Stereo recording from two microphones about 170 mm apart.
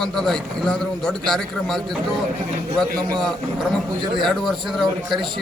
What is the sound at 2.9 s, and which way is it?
Speech, 60° right (ahead or behind).